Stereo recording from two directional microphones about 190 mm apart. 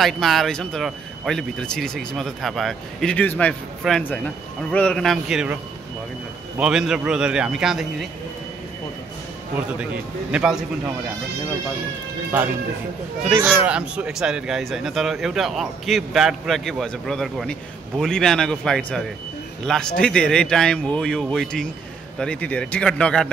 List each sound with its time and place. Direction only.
0.0 s speech: centre (ahead or behind)
6.6 s speech: 5° right (ahead or behind)
10.3 s speech: 5° right (ahead or behind)
13.4 s speech: 5° right (ahead or behind)